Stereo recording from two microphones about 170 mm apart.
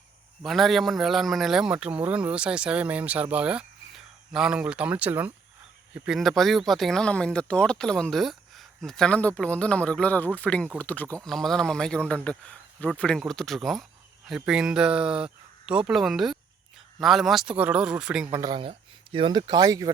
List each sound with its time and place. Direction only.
0.4 s a man's voice: centre (ahead or behind)
18.3 s speech: 25° right (ahead or behind)